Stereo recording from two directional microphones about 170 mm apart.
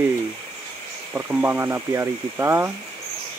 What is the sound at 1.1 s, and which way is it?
Speech, 10° right (ahead or behind).